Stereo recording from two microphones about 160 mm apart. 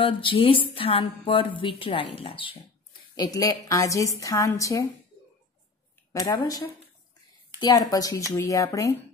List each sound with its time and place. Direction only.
0.0 s speech: 35° left (ahead or behind)
3.2 s a woman's voice: 25° left (ahead or behind)
6.1 s a woman's voice: 25° left (ahead or behind)